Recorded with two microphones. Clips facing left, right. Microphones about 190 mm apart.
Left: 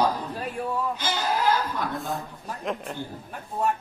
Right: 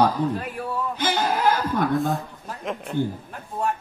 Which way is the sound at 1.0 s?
50° right (ahead or behind).